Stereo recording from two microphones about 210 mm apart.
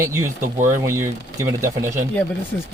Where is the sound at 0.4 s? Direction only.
40° right (ahead or behind).